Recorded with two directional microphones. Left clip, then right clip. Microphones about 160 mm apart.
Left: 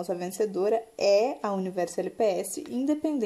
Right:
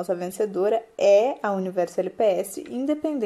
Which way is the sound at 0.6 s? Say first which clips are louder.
Right 5 dB; 5° left (ahead or behind).